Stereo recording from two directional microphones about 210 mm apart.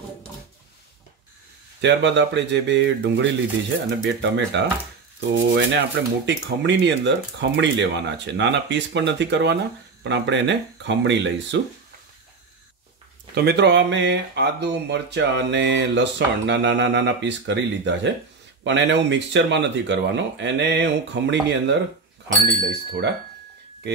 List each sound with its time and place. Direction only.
1.8 s speech: 55° right (ahead or behind)
13.3 s speech: 50° right (ahead or behind)
22.7 s a sound: 55° right (ahead or behind)